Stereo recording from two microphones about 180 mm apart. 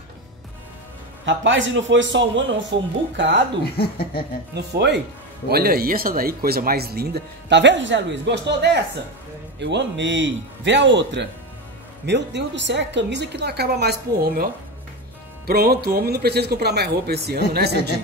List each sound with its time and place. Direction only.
1.2 s a man's voice: 90° right
3.7 s speech: 60° left (ahead or behind)
4.6 s a woman's voice: 65° right (ahead or behind)